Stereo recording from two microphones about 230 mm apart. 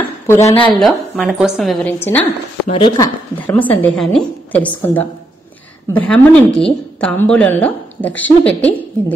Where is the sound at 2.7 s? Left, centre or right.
Left.